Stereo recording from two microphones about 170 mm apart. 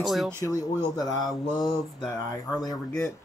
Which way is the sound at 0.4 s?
20° left (ahead or behind).